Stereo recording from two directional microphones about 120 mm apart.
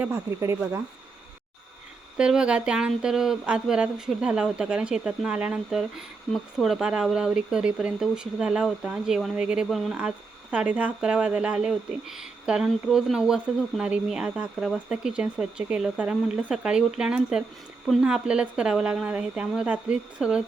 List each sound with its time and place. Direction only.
0.0 s speech: 20° right (ahead or behind)
2.1 s speech: 5° right (ahead or behind)